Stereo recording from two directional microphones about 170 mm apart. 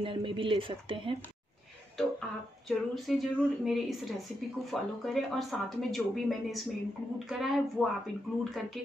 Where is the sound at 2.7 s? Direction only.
Centre (ahead or behind).